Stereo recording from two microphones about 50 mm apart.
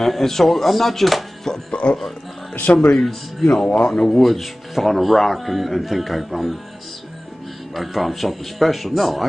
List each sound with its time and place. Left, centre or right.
0.0 s speech: centre
2.5 s a man's voice: left
3.0 s speech: centre
3.6 s a man's voice: left
4.1 s speech: centre
7.7 s speech: centre